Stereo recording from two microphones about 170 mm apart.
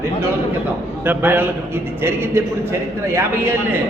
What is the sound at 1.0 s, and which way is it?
A man's voice, 10° right (ahead or behind).